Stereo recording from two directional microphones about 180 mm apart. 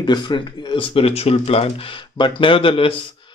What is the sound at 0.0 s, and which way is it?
A man's voice, 25° left (ahead or behind).